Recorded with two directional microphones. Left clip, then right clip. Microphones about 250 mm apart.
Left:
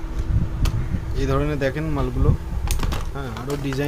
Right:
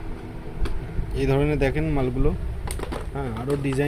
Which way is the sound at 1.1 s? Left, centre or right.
Centre.